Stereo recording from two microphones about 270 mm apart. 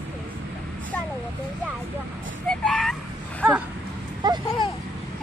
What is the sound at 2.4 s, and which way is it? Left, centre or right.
Speech, centre.